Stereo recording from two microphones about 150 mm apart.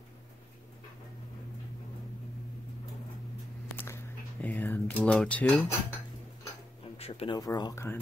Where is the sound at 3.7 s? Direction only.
15° left (ahead or behind).